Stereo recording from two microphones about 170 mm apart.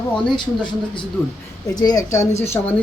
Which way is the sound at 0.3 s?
25° left (ahead or behind).